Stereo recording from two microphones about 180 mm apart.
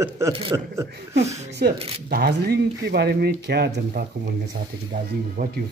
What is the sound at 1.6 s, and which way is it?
Speech, 55° right (ahead or behind).